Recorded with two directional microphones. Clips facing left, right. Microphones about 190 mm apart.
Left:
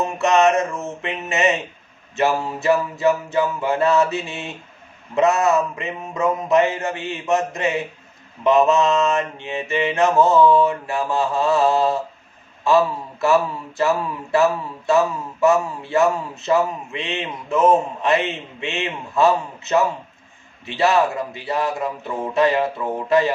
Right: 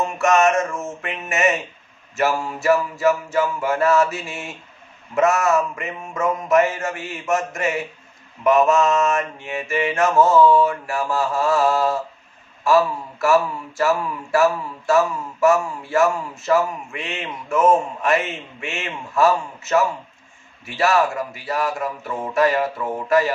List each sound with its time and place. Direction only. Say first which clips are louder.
0.0 s mantra: even; 20° left (ahead or behind)
0.6 s speech: left 1 dB; 20° left (ahead or behind)